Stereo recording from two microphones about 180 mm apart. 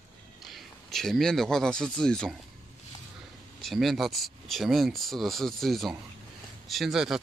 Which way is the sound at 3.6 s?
Centre (ahead or behind).